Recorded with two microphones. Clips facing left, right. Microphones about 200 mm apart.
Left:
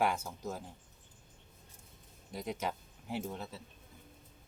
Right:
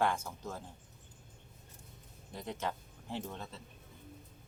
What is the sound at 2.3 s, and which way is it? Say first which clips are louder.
Speech: left 1 dB; 10° left (ahead or behind).